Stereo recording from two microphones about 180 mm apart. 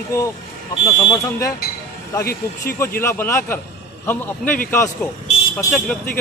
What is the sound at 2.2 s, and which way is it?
Speech, 55° left (ahead or behind).